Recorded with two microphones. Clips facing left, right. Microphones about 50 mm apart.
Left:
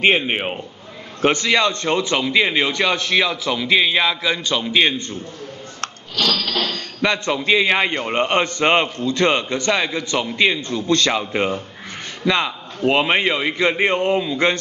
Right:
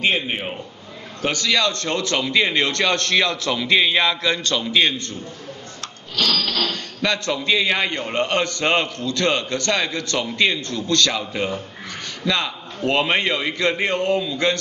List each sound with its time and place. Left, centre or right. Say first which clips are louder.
0.0 s a man's voice: left 4 dB; left
6.6 s a man's voice: left 2 dB; left